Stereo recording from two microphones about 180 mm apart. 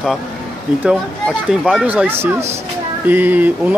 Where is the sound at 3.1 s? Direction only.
10° right (ahead or behind).